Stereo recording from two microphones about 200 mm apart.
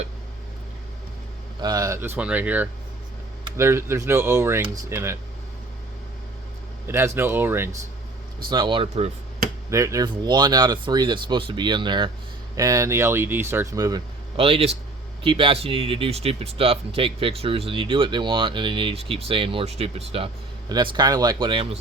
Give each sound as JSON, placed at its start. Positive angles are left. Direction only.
{"t": 1.6, "sound": "speech", "side_deg": -20}
{"t": 6.8, "sound": "speech", "side_deg": -10}
{"t": 8.4, "sound": "speech", "side_deg": -25}
{"t": 9.6, "sound": "speech", "side_deg": -15}